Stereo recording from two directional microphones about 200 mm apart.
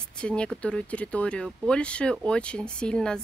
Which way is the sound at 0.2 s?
5° left (ahead or behind).